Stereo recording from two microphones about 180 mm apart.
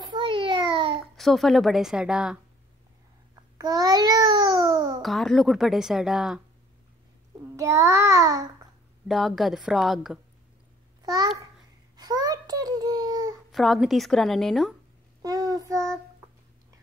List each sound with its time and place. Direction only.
0.1 s a sound: 25° right (ahead or behind)
1.1 s a woman's voice: centre (ahead or behind)
3.5 s a child's voice: 20° right (ahead or behind)
5.0 s a woman's voice: centre (ahead or behind)
7.5 s child singing: 15° right (ahead or behind)
9.0 s a woman's voice: centre (ahead or behind)
11.0 s babbling: 20° right (ahead or behind)
13.5 s a woman's voice: centre (ahead or behind)
15.2 s child singing: 20° right (ahead or behind)